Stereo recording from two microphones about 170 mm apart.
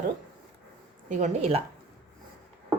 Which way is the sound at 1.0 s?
45° right (ahead or behind).